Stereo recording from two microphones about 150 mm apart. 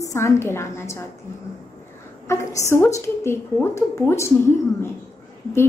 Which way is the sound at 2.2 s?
20° left (ahead or behind).